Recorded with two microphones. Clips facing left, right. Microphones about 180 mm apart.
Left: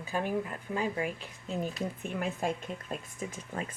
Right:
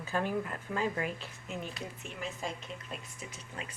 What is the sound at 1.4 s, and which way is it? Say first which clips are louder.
Speech: left 6 dB; 35° left (ahead or behind).